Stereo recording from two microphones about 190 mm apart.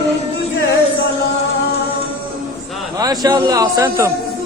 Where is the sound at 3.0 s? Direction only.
20° right (ahead or behind).